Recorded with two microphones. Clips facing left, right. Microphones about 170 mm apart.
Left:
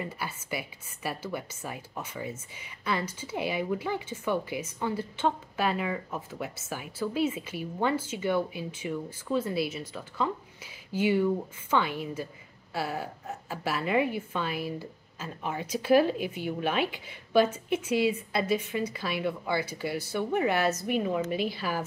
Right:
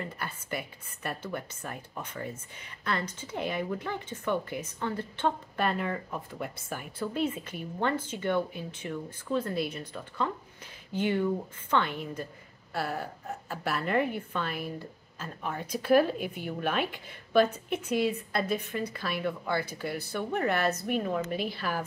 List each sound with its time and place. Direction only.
0.0 s a woman's voice: 5° left (ahead or behind)